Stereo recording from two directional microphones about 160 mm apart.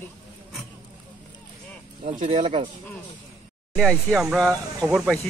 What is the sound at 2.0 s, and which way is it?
Speech, 45° right (ahead or behind).